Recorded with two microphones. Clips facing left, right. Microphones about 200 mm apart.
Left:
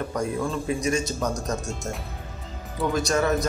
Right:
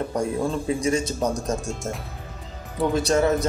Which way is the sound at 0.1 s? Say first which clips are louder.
Right 2 dB; 30° right (ahead or behind).